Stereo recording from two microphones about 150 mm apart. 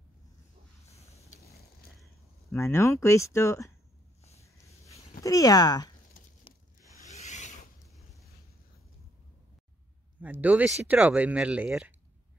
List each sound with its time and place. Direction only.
2.5 s speech: 20° left (ahead or behind)
4.4 s a sound: 20° left (ahead or behind)
5.2 s speech: 25° left (ahead or behind)
6.5 s rub: 35° left (ahead or behind)
6.8 s rub: 20° right (ahead or behind)
7.1 s rub: 50° left (ahead or behind)
7.9 s a sound: centre (ahead or behind)
10.2 s speech: 10° right (ahead or behind)